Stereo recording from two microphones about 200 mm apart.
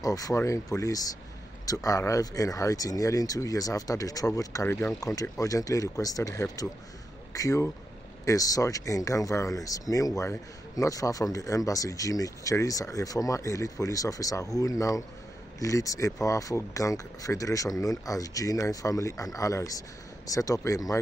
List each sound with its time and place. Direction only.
0.0 s speech: 15° left (ahead or behind)